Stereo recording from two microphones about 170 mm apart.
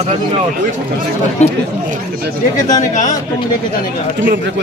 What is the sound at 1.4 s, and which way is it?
Speech, 40° left (ahead or behind).